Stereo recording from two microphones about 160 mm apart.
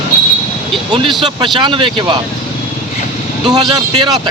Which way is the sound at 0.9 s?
30° right (ahead or behind).